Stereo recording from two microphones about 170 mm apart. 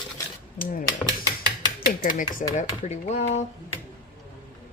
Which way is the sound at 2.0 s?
50° left (ahead or behind).